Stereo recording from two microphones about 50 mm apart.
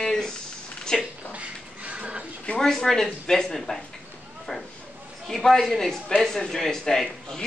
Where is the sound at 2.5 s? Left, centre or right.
Centre.